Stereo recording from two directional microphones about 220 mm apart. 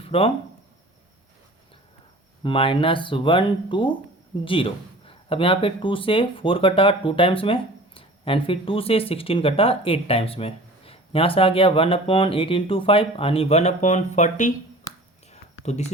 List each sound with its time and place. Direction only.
0.0 s speech: 25° left (ahead or behind)
2.4 s speech: 25° left (ahead or behind)
15.6 s speech: 30° left (ahead or behind)